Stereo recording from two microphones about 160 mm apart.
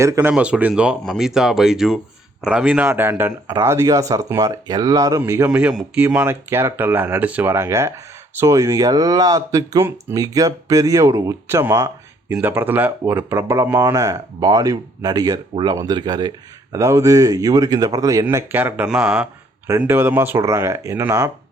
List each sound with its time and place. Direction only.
0.0 s speech: 15° right (ahead or behind)